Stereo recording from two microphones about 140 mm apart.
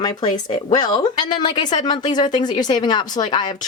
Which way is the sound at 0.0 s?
30° left (ahead or behind).